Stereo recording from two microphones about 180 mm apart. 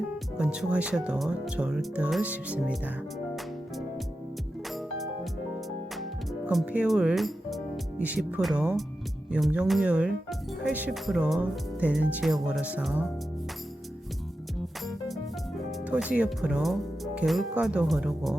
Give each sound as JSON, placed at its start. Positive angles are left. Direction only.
{"t": 0.3, "sound": "speech", "side_deg": -5}
{"t": 3.3, "sound": "music", "side_deg": 0}
{"t": 6.0, "sound": "speech", "side_deg": 0}
{"t": 14.8, "sound": "music", "side_deg": 0}
{"t": 17.2, "sound": "speech", "side_deg": -5}